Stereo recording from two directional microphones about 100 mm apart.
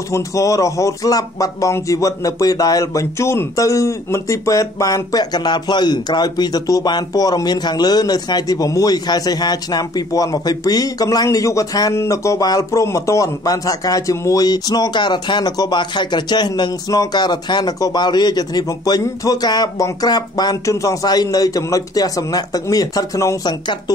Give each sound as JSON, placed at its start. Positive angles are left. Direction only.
{"t": 0.1, "sound": "a man's voice", "side_deg": 30}